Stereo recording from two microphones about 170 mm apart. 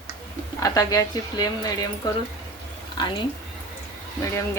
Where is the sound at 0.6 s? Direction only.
20° left (ahead or behind).